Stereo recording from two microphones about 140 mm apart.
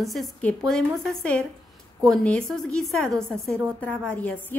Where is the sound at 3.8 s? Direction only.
10° left (ahead or behind).